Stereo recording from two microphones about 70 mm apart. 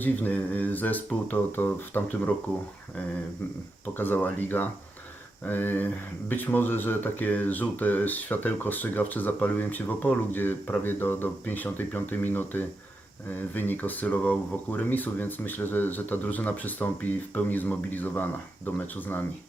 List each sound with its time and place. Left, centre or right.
0.0 s speech: left
3.9 s speech: left